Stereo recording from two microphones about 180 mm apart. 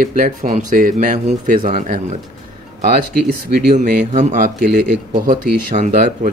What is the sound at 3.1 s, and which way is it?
Speech, 60° right (ahead or behind).